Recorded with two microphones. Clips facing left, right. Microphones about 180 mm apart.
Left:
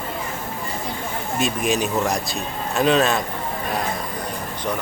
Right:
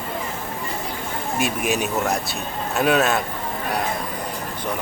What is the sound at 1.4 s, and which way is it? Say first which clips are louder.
A man's voice: left 1 dB; 10° right (ahead or behind).